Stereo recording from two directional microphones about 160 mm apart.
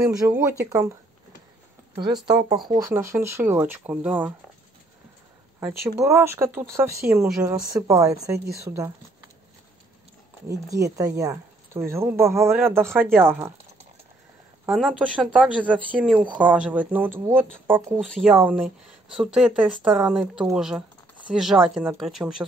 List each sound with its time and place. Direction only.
0.1 s speech: 20° right (ahead or behind)
2.0 s speech: 25° right (ahead or behind); by 4.3 s 10° right (ahead or behind)
5.6 s speech: 15° right (ahead or behind)
10.5 s speech: 20° right (ahead or behind)
14.7 s speech: centre (ahead or behind)
15.9 s speech: 5° left (ahead or behind)
16.3 s speech: 10° right (ahead or behind)